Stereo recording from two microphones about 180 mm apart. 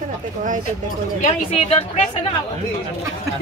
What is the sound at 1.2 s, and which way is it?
Speech, 35° left (ahead or behind).